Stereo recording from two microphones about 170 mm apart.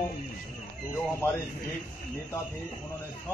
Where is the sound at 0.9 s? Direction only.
15° left (ahead or behind).